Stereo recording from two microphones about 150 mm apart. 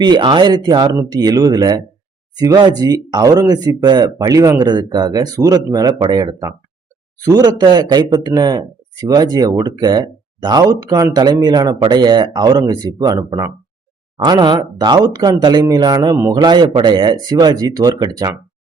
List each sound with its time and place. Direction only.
0.0 s speech: 30° right (ahead or behind)